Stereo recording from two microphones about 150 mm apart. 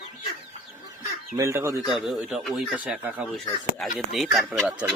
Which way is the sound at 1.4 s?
20° right (ahead or behind).